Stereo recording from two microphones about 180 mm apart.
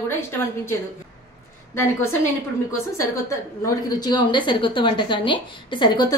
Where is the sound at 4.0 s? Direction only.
25° left (ahead or behind).